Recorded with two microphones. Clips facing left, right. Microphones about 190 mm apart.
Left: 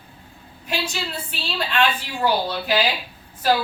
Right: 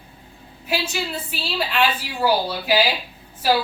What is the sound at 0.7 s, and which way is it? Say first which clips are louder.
A woman's voice: right 2 dB; 5° right (ahead or behind).